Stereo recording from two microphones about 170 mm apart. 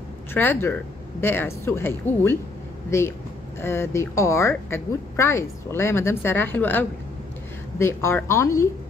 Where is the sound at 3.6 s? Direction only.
15° left (ahead or behind).